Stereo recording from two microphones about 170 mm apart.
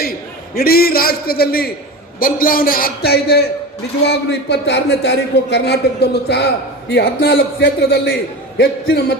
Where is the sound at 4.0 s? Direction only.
85° left.